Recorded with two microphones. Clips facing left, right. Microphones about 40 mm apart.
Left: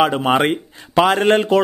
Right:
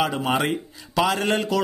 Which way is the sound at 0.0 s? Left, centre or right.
Left.